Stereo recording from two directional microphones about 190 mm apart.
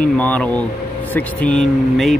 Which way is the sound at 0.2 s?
5° left (ahead or behind).